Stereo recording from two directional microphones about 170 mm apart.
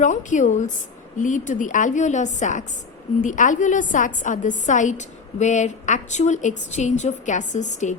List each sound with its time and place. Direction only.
0.0 s a woman's voice: 45° left (ahead or behind)